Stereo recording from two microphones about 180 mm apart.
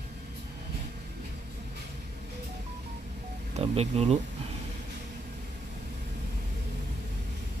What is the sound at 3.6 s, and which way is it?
Speech, 35° right (ahead or behind).